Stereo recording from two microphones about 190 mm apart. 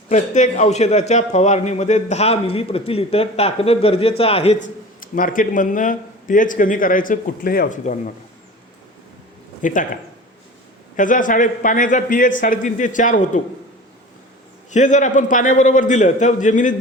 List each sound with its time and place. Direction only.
0.1 s a man's voice: 40° left (ahead or behind)
4.9 s speech: 45° left (ahead or behind)
9.6 s speech: 45° left (ahead or behind)
10.9 s a man's voice: 45° left (ahead or behind)
14.7 s a man's voice: 40° left (ahead or behind)